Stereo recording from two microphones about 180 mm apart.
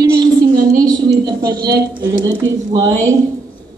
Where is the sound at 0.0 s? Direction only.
20° right (ahead or behind).